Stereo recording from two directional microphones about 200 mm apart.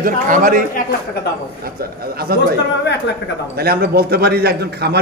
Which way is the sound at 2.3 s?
50° right (ahead or behind).